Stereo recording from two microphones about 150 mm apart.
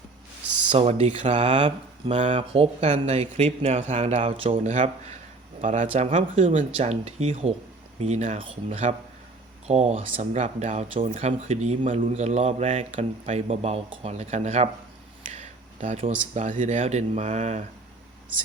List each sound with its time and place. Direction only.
0.7 s speech: 45° right (ahead or behind)
1.4 s speech: 35° right (ahead or behind); by 5.9 s 55° right (ahead or behind)
5.9 s speech: 45° right (ahead or behind)
15.3 s a sound: 50° right (ahead or behind)
16.3 s speech: 50° right (ahead or behind)